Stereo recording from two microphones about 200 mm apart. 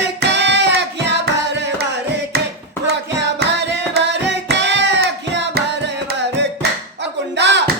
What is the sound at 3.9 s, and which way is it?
Music, 60° right (ahead or behind).